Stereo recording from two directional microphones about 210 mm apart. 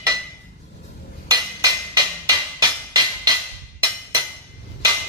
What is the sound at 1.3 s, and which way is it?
Music, 20° right (ahead or behind).